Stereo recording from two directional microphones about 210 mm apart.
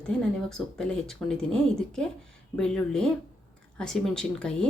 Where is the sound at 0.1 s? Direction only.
5° left (ahead or behind).